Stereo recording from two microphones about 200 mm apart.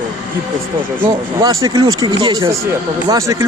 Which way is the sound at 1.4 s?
15° right (ahead or behind).